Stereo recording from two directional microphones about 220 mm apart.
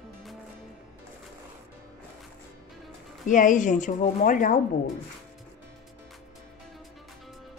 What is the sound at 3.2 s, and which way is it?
Speech, 35° left (ahead or behind).